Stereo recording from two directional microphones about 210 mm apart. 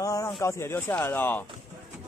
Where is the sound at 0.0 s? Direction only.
15° left (ahead or behind).